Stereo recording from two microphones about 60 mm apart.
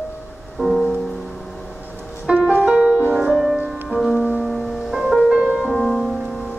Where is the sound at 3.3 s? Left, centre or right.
Centre.